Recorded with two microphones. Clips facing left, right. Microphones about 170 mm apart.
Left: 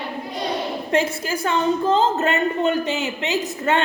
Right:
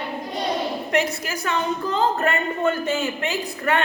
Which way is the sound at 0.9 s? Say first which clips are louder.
Left 4 dB; 30° left (ahead or behind).